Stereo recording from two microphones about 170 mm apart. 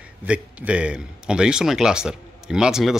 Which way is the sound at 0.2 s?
10° right (ahead or behind).